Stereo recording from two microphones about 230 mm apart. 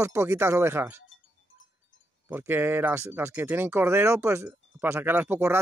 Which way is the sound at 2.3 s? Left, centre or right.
Centre.